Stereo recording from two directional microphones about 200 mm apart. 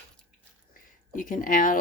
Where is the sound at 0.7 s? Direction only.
45° left (ahead or behind).